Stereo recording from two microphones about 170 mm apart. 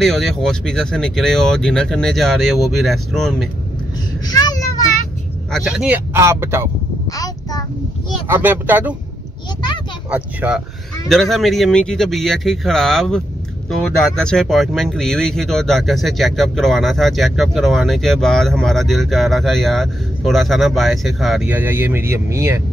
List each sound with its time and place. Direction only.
0.0 s speech: centre (ahead or behind)
4.3 s a sound: 20° left (ahead or behind)
5.5 s speech: 5° right (ahead or behind)
6.1 s speech: 15° right (ahead or behind)
8.3 s speech: 10° right (ahead or behind)
10.1 s speech: 5° right (ahead or behind)